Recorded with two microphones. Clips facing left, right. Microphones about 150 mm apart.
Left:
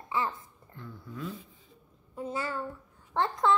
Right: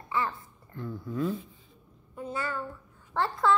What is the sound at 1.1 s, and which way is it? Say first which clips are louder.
Speech: right 9 dB; 45° right (ahead or behind).